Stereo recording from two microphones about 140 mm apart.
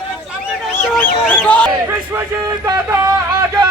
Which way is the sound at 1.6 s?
20° right (ahead or behind).